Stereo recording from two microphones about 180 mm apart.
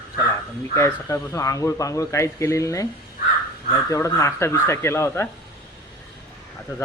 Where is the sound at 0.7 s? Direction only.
15° left (ahead or behind).